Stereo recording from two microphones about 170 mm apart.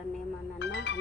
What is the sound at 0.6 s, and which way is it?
Speech, 90° left.